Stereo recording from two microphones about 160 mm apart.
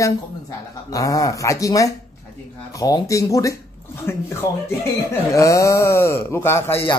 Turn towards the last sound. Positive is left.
turn(degrees=15)  # may be behind; listen again after turning